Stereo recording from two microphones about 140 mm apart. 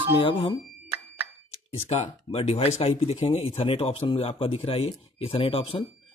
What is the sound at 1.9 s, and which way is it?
Speech, 50° left (ahead or behind).